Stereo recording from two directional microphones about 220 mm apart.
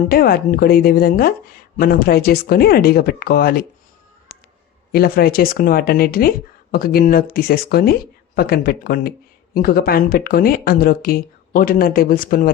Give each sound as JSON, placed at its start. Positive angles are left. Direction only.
{"t": 0.1, "sound": "speech", "side_deg": 45}
{"t": 4.9, "sound": "speech", "side_deg": 45}